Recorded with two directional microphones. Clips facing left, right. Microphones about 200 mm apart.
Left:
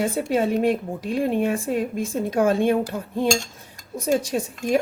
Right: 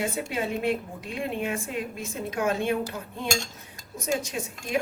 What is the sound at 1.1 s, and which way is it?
A woman's voice, 35° left (ahead or behind).